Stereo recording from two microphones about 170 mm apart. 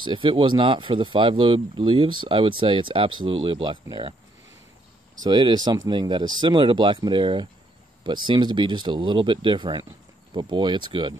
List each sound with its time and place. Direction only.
0.0 s speech: 30° right (ahead or behind)
5.2 s speech: 25° right (ahead or behind)